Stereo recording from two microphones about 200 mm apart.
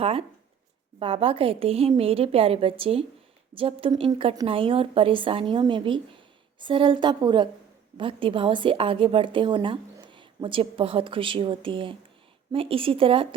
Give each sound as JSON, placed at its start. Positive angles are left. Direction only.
{"t": 0.0, "sound": "a woman's voice", "side_deg": -30}